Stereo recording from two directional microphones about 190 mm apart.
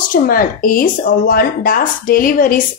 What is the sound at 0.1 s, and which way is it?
Speech, 50° left (ahead or behind).